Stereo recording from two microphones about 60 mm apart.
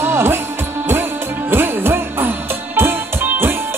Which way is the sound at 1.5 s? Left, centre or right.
Right.